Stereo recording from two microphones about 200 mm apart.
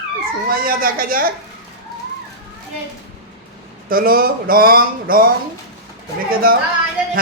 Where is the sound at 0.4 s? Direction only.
45° right (ahead or behind).